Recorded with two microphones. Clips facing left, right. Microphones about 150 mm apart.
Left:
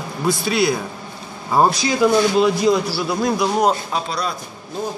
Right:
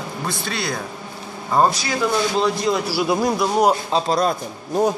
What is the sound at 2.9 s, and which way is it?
Speech, 15° right (ahead or behind).